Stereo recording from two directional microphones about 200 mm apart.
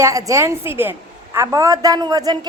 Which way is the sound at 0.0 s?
15° right (ahead or behind).